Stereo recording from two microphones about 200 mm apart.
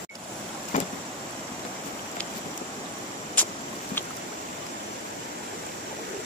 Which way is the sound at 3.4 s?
10° left (ahead or behind).